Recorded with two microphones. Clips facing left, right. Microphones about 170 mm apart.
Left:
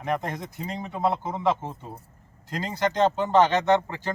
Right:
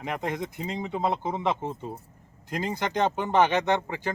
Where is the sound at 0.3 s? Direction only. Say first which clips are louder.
Right 2 dB; 20° right (ahead or behind).